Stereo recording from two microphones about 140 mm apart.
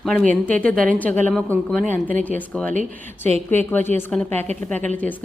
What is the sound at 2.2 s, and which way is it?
Speech, 10° left (ahead or behind).